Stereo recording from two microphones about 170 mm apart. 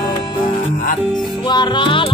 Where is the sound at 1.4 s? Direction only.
25° left (ahead or behind).